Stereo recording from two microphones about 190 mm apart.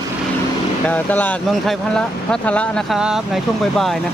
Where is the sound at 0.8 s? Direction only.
10° left (ahead or behind).